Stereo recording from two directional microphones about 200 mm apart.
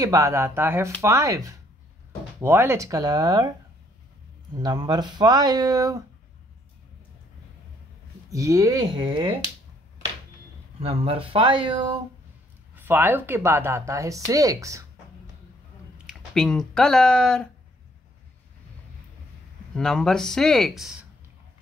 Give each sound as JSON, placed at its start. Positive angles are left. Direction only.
{"t": 0.0, "sound": "speech", "side_deg": -15}
{"t": 4.6, "sound": "speech", "side_deg": -20}
{"t": 8.3, "sound": "speech", "side_deg": -15}
{"t": 10.8, "sound": "speech", "side_deg": -30}
{"t": 12.7, "sound": "speech", "side_deg": -10}
{"t": 16.1, "sound": "speech", "side_deg": 5}
{"t": 19.7, "sound": "speech", "side_deg": 5}